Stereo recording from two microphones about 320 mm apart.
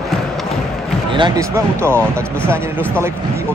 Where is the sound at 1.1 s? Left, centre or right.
Centre.